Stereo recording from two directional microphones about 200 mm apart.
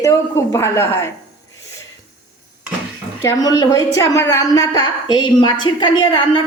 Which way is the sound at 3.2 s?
20° left (ahead or behind).